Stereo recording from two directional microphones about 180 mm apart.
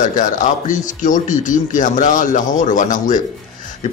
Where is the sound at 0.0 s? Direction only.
45° left (ahead or behind).